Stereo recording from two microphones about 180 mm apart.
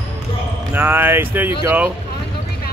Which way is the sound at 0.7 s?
10° right (ahead or behind).